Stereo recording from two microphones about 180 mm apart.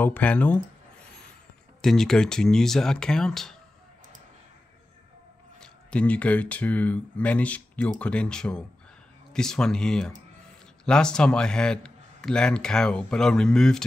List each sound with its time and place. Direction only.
0.0 s speech: 10° left (ahead or behind)
1.8 s speech: 5° left (ahead or behind)
5.6 s speech: 5° left (ahead or behind)